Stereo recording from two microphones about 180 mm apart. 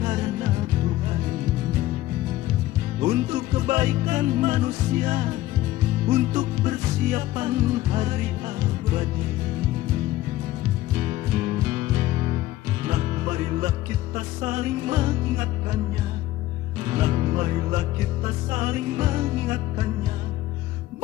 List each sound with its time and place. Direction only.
0.0 s music: 40° right (ahead or behind)
3.0 s music: 35° right (ahead or behind)
11.0 s music: 35° right (ahead or behind)
16.8 s music: 35° right (ahead or behind)